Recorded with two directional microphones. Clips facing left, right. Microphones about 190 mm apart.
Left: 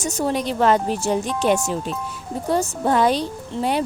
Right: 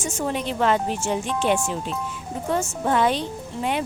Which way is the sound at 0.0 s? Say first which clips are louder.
Left 4 dB; 40° left (ahead or behind).